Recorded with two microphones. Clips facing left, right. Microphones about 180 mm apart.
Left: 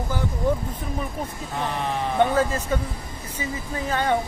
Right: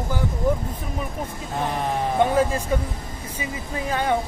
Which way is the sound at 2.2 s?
10° right (ahead or behind).